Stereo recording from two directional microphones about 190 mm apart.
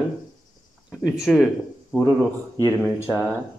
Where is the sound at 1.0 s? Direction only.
Centre (ahead or behind).